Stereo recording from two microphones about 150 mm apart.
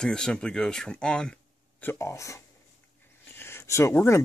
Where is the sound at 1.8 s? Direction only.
20° left (ahead or behind).